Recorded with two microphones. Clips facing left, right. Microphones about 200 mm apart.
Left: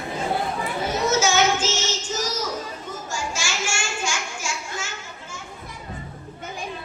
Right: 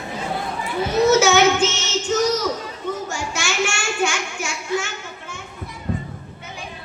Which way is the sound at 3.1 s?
65° right (ahead or behind).